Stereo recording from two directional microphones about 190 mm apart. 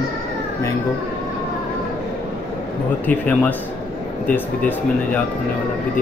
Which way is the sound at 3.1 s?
10° left (ahead or behind).